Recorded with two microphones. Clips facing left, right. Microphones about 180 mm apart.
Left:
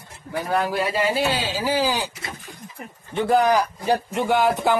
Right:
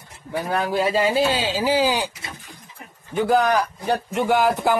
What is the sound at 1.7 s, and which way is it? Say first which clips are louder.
Speech: right 2 dB; 15° right (ahead or behind).